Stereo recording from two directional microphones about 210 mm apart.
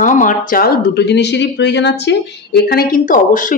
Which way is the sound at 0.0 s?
35° left (ahead or behind).